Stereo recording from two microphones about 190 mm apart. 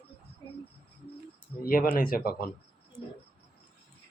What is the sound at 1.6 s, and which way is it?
Speech, 50° left (ahead or behind).